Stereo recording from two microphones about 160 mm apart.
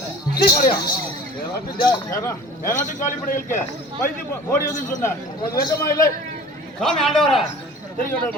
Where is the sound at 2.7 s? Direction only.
50° left (ahead or behind).